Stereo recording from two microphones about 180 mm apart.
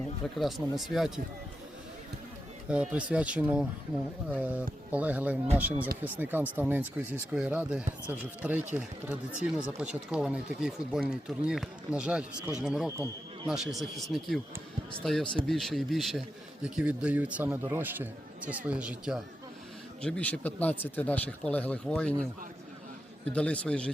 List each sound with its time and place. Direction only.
0.3 s speech: centre (ahead or behind)
2.6 s a man's voice: 5° right (ahead or behind)
20.0 s speech: 5° left (ahead or behind)
23.3 s speech: 5° left (ahead or behind)